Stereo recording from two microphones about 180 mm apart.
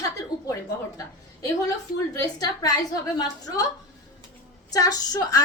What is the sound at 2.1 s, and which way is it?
Speech, 20° left (ahead or behind).